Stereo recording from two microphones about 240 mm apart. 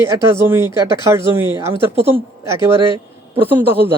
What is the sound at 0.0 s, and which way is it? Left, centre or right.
A man's voice, centre.